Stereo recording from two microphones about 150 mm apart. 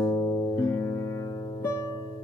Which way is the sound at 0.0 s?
20° left (ahead or behind).